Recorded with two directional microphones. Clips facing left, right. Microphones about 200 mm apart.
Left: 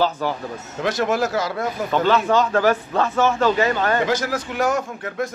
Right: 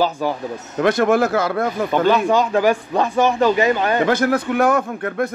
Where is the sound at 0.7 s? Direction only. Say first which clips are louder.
Right 6 dB; 55° right (ahead or behind).